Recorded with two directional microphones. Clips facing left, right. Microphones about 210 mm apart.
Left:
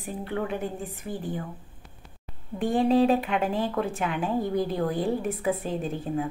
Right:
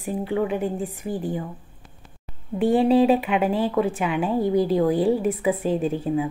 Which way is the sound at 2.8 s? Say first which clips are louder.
Right 1 dB; 5° right (ahead or behind).